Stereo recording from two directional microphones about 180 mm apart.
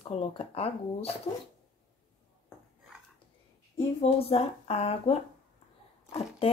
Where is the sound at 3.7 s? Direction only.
30° left (ahead or behind).